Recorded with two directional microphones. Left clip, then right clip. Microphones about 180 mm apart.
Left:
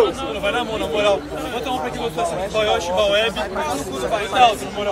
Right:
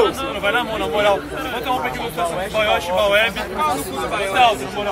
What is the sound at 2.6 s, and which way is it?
Speech, 30° left (ahead or behind).